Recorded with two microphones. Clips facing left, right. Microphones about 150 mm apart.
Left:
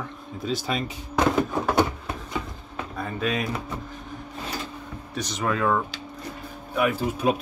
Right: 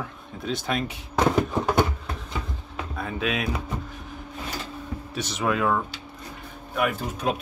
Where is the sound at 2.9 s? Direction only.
Centre (ahead or behind).